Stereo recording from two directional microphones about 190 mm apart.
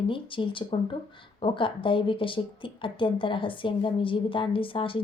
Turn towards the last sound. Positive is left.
turn(degrees=30)  # may be behind; listen again after turning